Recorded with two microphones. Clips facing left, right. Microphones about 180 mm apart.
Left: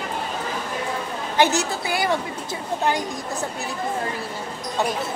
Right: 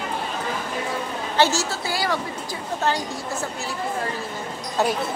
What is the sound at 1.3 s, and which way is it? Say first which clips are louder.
Speech: left 1 dB; 15° left (ahead or behind).